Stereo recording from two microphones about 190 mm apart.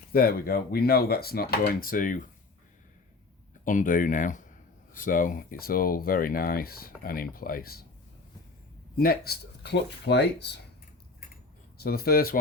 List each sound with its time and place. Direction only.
0.1 s speech: 50° left (ahead or behind)
3.6 s speech: 45° left (ahead or behind)
9.0 s speech: 55° left (ahead or behind)
11.8 s speech: 55° left (ahead or behind)